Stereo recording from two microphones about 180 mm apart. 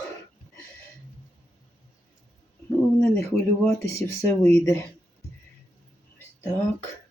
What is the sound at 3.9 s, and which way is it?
Speech, 15° left (ahead or behind).